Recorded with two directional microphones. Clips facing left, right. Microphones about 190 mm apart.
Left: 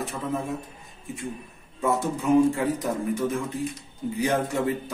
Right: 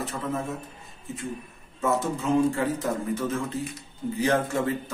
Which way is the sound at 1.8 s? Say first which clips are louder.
Left 1 dB; 15° left (ahead or behind).